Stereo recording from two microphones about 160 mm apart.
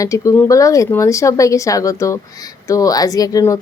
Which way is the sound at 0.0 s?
20° left (ahead or behind).